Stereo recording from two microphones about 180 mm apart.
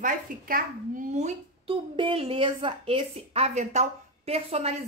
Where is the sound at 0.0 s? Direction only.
45° right (ahead or behind).